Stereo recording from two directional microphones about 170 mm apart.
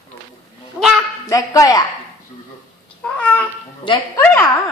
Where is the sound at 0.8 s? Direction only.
5° right (ahead or behind).